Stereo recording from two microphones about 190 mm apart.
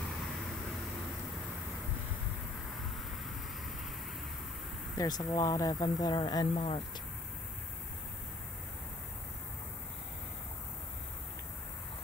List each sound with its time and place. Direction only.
4.9 s speech: 20° left (ahead or behind)